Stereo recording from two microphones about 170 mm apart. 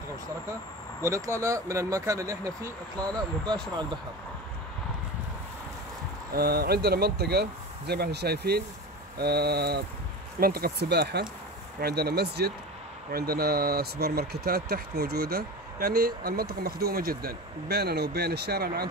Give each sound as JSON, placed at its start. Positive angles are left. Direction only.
{"t": 1.0, "sound": "speech", "side_deg": -20}
{"t": 6.3, "sound": "speech", "side_deg": -65}